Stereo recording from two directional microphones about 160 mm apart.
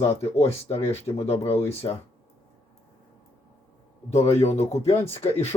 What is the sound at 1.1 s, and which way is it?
Speech, 40° left (ahead or behind).